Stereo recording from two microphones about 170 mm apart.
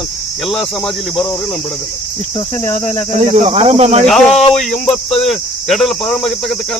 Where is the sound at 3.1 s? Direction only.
35° right (ahead or behind).